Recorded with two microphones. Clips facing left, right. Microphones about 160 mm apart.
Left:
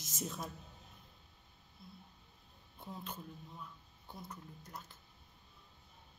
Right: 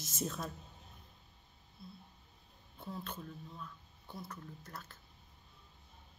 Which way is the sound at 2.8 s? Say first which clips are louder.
Right 2 dB; 15° left (ahead or behind).